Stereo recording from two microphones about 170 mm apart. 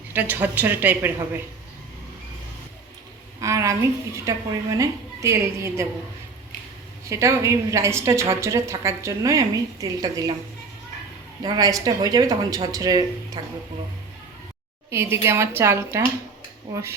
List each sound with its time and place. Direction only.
0.1 s a woman's voice: 10° right (ahead or behind)
3.4 s a woman's voice: 20° right (ahead or behind)
7.1 s a woman's voice: 15° right (ahead or behind)
11.4 s speech: 25° right (ahead or behind)
14.8 s a woman's voice: 15° right (ahead or behind)